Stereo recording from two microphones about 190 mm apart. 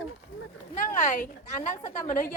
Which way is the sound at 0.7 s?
45° left (ahead or behind).